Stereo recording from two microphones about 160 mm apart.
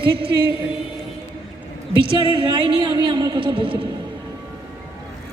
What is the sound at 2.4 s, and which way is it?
A woman's voice, 30° right (ahead or behind).